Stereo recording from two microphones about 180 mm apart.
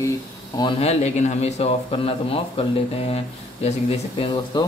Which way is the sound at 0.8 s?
40° left (ahead or behind).